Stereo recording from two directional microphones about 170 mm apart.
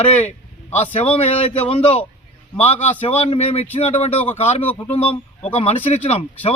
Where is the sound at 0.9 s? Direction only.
35° left (ahead or behind).